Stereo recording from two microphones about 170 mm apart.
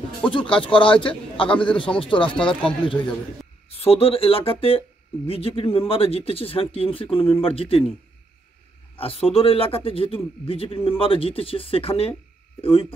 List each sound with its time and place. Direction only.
0.3 s speech: 30° left (ahead or behind)
8.9 s speech: 35° left (ahead or behind)